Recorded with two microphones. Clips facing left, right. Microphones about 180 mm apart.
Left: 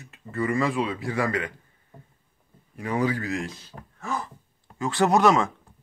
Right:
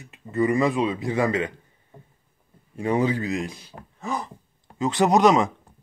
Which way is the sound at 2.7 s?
25° right (ahead or behind).